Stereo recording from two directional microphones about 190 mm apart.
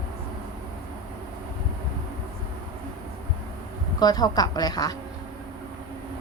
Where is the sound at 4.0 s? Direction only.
20° left (ahead or behind).